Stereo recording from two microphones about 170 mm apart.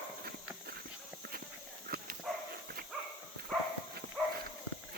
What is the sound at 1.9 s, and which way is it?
Dog, 65° right (ahead or behind).